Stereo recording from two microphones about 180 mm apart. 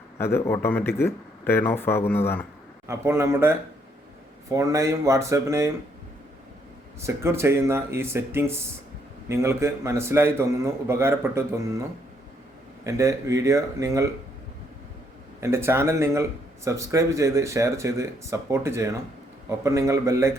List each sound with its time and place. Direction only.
0.2 s speech: 15° left (ahead or behind)
2.8 s a man's voice: 15° right (ahead or behind)
7.0 s a man's voice: 15° right (ahead or behind)
12.8 s a man's voice: 15° right (ahead or behind)
15.4 s a man's voice: 15° right (ahead or behind)